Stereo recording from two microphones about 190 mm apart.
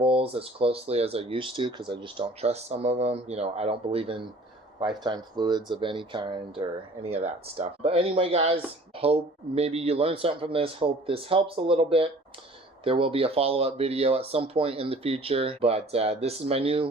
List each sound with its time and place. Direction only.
0.0 s speech: 30° right (ahead or behind)